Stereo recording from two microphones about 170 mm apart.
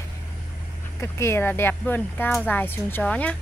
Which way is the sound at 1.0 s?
15° left (ahead or behind).